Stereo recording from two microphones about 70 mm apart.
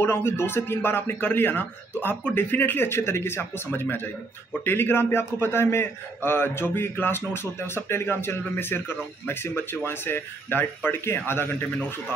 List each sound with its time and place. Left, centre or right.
0.0 s a man's voice: left